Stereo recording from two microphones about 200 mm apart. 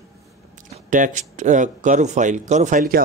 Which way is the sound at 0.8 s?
40° right (ahead or behind).